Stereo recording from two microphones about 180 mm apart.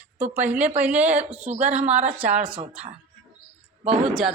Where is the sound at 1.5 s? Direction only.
40° right (ahead or behind).